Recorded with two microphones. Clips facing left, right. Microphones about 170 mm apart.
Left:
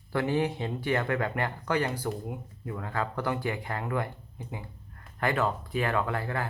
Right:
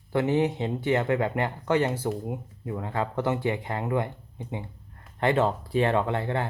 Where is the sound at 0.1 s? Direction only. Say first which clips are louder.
Right 4 dB; 20° right (ahead or behind).